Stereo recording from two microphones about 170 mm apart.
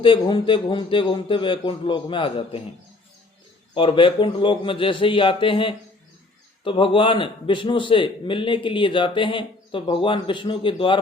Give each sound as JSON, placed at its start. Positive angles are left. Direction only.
{"t": 0.0, "sound": "a man's voice", "side_deg": 30}
{"t": 3.8, "sound": "a man's voice", "side_deg": 30}